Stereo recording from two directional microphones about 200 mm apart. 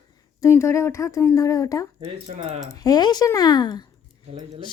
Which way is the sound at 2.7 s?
20° left (ahead or behind).